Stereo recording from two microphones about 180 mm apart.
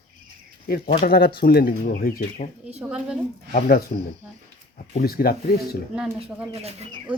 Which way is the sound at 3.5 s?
55° left (ahead or behind).